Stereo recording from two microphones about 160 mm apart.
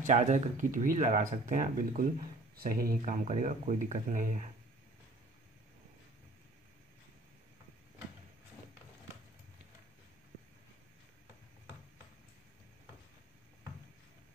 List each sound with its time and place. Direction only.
0.0 s speech: 50° right (ahead or behind); by 3.0 s 65° right (ahead or behind)
3.0 s speech: 45° right (ahead or behind)